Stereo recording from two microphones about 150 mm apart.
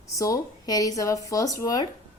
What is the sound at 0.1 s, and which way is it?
Speech, 25° left (ahead or behind).